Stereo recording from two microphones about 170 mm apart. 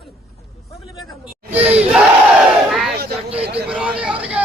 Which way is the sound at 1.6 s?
35° right (ahead or behind).